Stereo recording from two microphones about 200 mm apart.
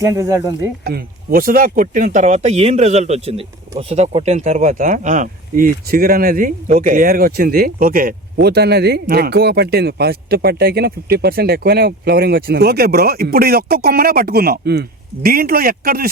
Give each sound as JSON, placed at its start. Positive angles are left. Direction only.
{"t": 0.0, "sound": "speech", "side_deg": -15}
{"t": 0.9, "sound": "speech", "side_deg": -50}